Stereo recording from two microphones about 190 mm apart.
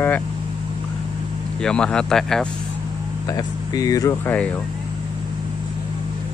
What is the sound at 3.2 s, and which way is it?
Speech, 20° left (ahead or behind).